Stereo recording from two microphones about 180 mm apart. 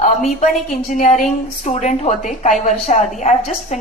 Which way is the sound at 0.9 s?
45° left (ahead or behind).